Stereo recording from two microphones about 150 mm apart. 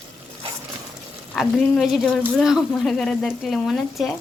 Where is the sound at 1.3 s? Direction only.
Centre (ahead or behind).